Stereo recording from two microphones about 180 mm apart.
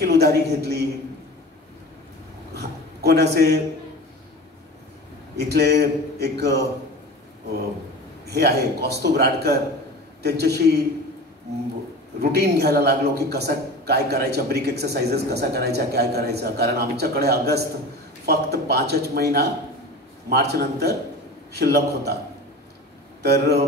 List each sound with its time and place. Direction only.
0.0 s a man's voice: 65° right (ahead or behind)
2.5 s a sound: 65° right (ahead or behind)
5.5 s a man's voice: 65° right (ahead or behind)
8.3 s a man's voice: 65° right (ahead or behind)
12.2 s a man's voice: 65° right (ahead or behind)
23.2 s a man's voice: 65° right (ahead or behind)